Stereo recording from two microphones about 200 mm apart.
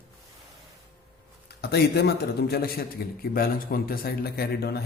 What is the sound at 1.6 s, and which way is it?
A man's voice, 55° left (ahead or behind).